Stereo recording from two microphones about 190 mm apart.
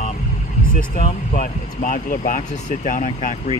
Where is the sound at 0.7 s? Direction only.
45° left (ahead or behind).